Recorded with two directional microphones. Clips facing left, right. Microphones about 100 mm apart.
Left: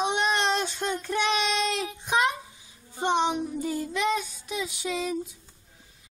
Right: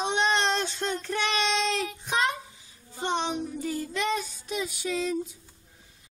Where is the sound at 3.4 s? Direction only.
15° left (ahead or behind).